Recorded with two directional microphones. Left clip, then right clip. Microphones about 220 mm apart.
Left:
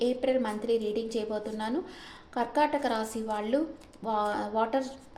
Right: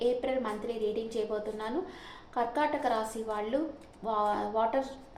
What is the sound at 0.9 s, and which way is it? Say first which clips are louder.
A woman's voice: left 1 dB; 55° left (ahead or behind).